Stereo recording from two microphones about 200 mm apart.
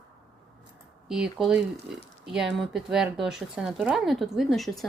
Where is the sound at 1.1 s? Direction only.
Centre (ahead or behind).